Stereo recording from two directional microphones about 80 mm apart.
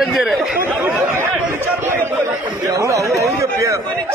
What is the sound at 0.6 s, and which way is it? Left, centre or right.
Speech, right.